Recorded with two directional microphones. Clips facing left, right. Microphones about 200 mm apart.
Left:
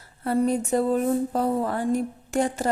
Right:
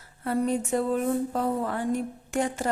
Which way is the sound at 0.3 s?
35° left (ahead or behind).